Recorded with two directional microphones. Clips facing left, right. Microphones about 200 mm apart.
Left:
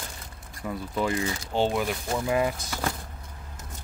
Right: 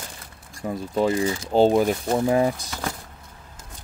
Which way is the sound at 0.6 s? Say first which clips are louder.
Right 5 dB; 35° right (ahead or behind).